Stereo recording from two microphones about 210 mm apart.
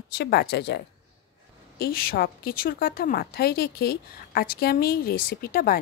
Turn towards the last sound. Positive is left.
turn(degrees=45)  # may be behind; listen again after turning